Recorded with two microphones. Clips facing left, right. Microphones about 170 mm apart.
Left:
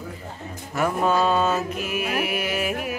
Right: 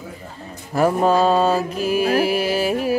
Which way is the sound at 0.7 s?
35° right (ahead or behind).